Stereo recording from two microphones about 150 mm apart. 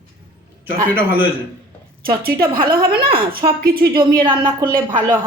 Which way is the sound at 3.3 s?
80° right.